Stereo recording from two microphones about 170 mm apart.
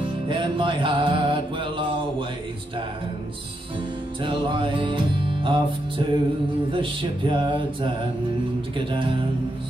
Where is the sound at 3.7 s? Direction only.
30° right (ahead or behind).